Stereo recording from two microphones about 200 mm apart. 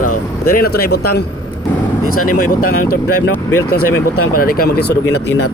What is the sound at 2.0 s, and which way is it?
Speech, 90° left.